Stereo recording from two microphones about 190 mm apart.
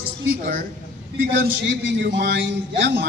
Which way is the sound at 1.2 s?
65° right (ahead or behind).